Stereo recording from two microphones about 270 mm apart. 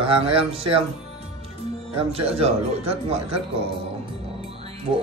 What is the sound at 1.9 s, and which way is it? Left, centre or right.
Speech, right.